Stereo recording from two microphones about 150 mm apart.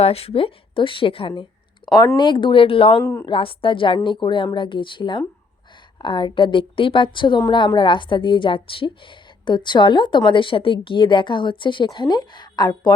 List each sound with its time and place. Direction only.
0.0 s a woman's voice: 40° left (ahead or behind)
1.8 s a sound: 10° left (ahead or behind)
2.1 s a woman's voice: 30° left (ahead or behind)
3.0 s speech: 20° left (ahead or behind)
3.2 s a woman's voice: 35° left (ahead or behind)